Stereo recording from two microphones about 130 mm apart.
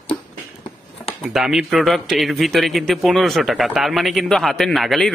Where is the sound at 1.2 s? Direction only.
5° right (ahead or behind).